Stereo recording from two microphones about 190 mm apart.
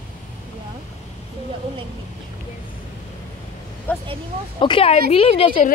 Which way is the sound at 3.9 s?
10° left (ahead or behind).